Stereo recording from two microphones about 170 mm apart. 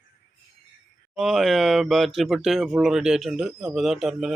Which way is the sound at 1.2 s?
Centre (ahead or behind).